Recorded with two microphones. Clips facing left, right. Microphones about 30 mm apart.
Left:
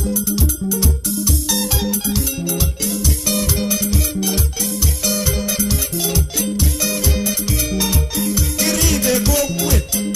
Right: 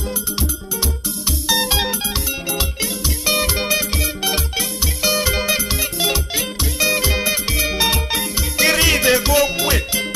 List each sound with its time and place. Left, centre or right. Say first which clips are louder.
1.6 s music: right 2 dB; right